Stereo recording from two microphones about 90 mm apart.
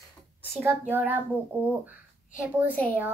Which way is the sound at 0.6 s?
25° right (ahead or behind).